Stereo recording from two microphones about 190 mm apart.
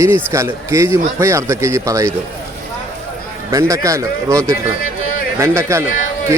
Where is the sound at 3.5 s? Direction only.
15° right (ahead or behind).